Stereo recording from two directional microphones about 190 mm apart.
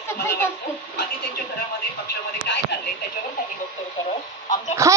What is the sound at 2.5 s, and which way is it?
Speech, 65° left (ahead or behind).